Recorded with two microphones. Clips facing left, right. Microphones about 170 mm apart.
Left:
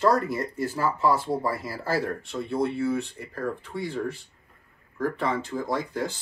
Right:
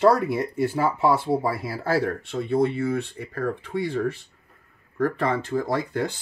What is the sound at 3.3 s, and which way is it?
Speech, 65° right (ahead or behind).